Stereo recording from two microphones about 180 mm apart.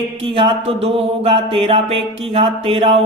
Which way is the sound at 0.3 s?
30° right (ahead or behind).